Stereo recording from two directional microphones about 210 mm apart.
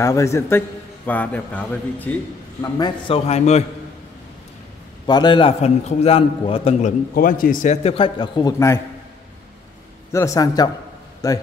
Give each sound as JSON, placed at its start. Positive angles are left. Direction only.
{"t": 0.0, "sound": "a man's voice", "side_deg": 15}
{"t": 2.6, "sound": "a man's voice", "side_deg": 20}
{"t": 3.3, "sound": "a man's voice", "side_deg": 30}
{"t": 5.0, "sound": "a man's voice", "side_deg": 20}
{"t": 7.2, "sound": "a man's voice", "side_deg": 40}
{"t": 10.1, "sound": "a man's voice", "side_deg": 15}